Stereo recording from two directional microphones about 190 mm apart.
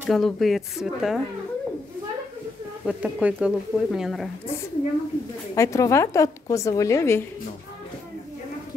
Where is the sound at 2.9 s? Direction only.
5° right (ahead or behind).